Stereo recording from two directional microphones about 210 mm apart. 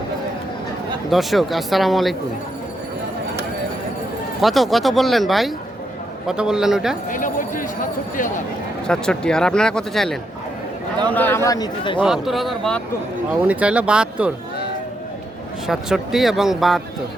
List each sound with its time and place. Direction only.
1.1 s speech: centre (ahead or behind)
4.4 s speech: centre (ahead or behind)
7.1 s speech: 40° left (ahead or behind)
8.9 s a man's voice: 5° left (ahead or behind); by 11.9 s 20° left (ahead or behind)
11.9 s speech: centre (ahead or behind)
15.6 s speech: centre (ahead or behind)